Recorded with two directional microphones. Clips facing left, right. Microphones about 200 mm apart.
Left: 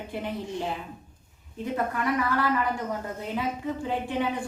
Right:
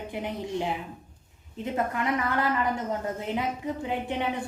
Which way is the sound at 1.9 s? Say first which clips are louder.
Left 1 dB; 20° right (ahead or behind).